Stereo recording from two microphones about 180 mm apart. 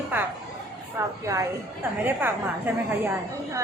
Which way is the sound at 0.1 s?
10° right (ahead or behind).